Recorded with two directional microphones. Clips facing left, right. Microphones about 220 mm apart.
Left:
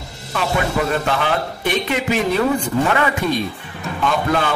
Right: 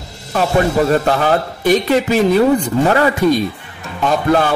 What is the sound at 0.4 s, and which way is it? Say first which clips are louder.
Speech: right 6 dB; 40° right (ahead or behind).